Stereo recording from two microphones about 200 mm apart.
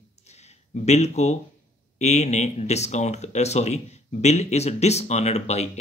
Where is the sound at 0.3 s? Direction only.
35° left (ahead or behind).